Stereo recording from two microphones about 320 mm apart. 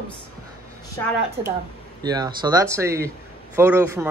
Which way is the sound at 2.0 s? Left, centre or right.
Centre.